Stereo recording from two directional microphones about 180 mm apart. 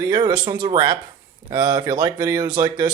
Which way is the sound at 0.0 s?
25° right (ahead or behind).